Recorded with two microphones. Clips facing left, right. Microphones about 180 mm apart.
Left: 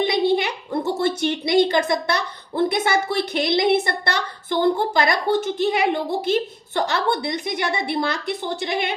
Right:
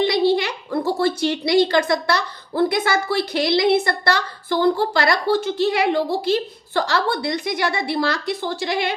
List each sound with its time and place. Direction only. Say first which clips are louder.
0.3 s a child's voice: right 1 dB; 20° left (ahead or behind)